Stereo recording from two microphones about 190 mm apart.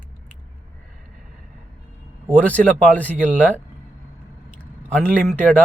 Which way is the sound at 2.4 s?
10° left (ahead or behind).